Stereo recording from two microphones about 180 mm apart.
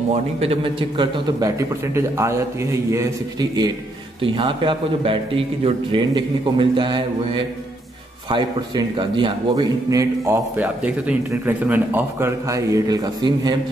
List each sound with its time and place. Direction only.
0.1 s a man's voice: 35° right (ahead or behind)
8.3 s a man's voice: 25° right (ahead or behind)